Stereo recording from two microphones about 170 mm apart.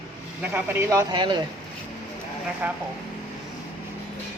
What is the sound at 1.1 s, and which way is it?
Speech, 25° right (ahead or behind).